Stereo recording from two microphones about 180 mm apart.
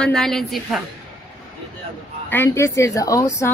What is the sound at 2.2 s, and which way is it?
A woman's voice, 10° left (ahead or behind).